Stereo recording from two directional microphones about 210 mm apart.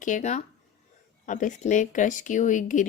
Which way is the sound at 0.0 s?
35° left (ahead or behind).